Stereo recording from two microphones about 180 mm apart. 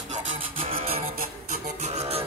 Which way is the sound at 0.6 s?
30° right (ahead or behind).